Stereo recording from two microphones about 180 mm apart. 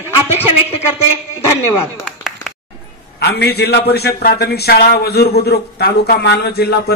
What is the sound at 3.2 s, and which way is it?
A man's voice, 65° left (ahead or behind).